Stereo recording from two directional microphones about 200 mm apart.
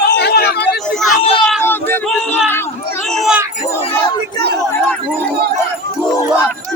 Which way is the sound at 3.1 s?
Centre (ahead or behind).